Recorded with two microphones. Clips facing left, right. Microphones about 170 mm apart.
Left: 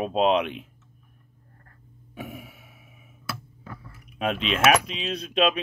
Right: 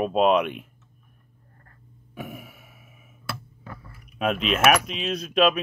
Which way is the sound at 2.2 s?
50° right (ahead or behind).